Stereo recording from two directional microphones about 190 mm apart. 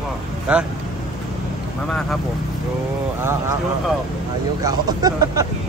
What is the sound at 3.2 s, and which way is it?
Speech, 15° right (ahead or behind).